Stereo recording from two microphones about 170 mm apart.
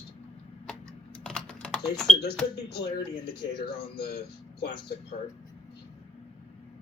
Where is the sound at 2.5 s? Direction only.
75° left (ahead or behind).